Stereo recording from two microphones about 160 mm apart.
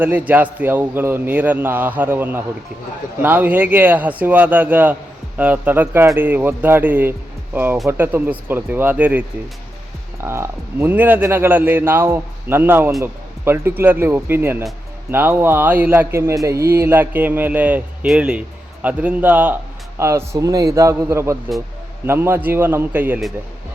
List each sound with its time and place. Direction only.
0.0 s a man's voice: 10° right (ahead or behind)
10.2 s a man's voice: 15° right (ahead or behind)